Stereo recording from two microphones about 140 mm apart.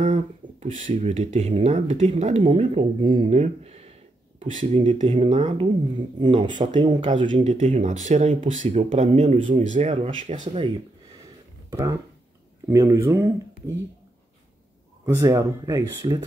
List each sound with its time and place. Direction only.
0.0 s speech: 60° right (ahead or behind); by 3.3 s 35° right (ahead or behind)
3.3 s speech: 50° right (ahead or behind)
4.5 s speech: 65° right (ahead or behind)
5.6 s speech: 35° right (ahead or behind)
7.4 s speech: 55° right (ahead or behind)
11.7 s speech: 20° right (ahead or behind)
15.0 s speech: 20° right (ahead or behind)